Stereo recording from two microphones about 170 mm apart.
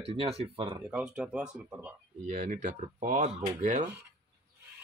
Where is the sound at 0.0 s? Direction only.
35° right (ahead or behind).